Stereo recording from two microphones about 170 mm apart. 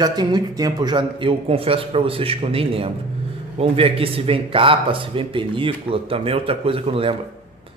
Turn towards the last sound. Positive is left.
turn(degrees=-30)  # may be behind; listen again after turning